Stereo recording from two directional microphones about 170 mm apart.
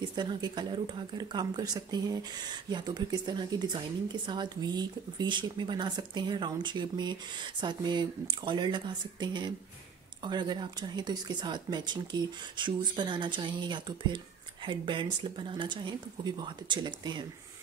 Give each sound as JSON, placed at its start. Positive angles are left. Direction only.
{"t": 0.1, "sound": "speech", "side_deg": -25}